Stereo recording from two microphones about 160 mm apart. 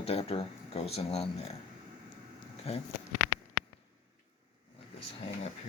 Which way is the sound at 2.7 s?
40° left (ahead or behind).